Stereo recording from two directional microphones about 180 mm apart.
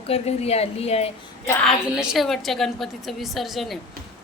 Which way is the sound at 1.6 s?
Centre (ahead or behind).